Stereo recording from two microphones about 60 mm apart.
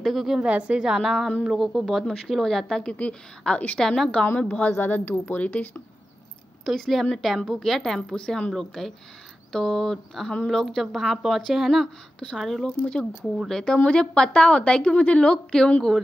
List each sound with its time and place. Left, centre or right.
0.0 s a woman's voice: centre
0.4 s a woman's voice: centre
3.8 s speech: centre
4.4 s a woman's voice: left
6.6 s a woman's voice: centre
12.6 s speech: centre